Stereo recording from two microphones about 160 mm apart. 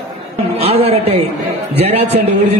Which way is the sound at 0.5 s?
40° right (ahead or behind).